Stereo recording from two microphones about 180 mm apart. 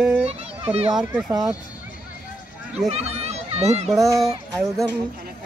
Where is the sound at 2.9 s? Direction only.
35° right (ahead or behind).